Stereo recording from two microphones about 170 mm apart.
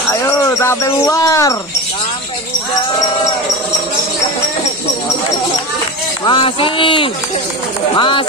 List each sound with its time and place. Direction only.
0.1 s speech: 15° left (ahead or behind)
6.2 s speech: 30° left (ahead or behind)